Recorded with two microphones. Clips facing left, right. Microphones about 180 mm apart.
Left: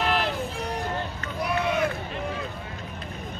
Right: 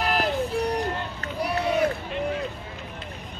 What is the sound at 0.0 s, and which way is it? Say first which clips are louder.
Music: even; 40° right (ahead or behind).